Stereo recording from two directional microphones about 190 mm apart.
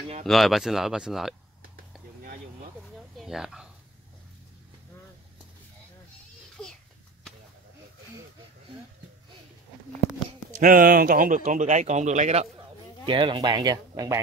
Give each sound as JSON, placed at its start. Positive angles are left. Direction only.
{"t": 0.3, "sound": "speech", "side_deg": 0}
{"t": 3.2, "sound": "speech", "side_deg": 0}
{"t": 6.5, "sound": "a sound", "side_deg": 5}
{"t": 10.6, "sound": "speech", "side_deg": -45}
{"t": 13.0, "sound": "speech", "side_deg": -25}